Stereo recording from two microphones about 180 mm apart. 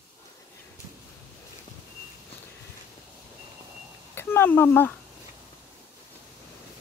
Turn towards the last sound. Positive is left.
turn(degrees=10)  # may be behind; listen again after turning